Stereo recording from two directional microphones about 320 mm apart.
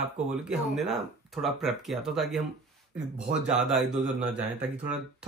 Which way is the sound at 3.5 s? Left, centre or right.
Centre.